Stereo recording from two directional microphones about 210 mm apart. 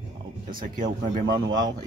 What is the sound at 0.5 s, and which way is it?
Speech, 40° right (ahead or behind).